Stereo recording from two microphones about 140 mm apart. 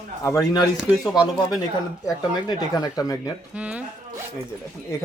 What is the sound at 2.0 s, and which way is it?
Speech, 25° left (ahead or behind).